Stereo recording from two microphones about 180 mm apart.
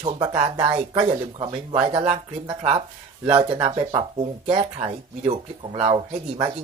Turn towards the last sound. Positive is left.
turn(degrees=-30)  # may be behind; listen again after turning